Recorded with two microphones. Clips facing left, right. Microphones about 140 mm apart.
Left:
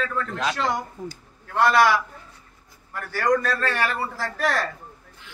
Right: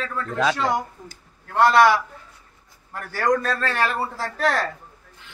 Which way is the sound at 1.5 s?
25° right (ahead or behind).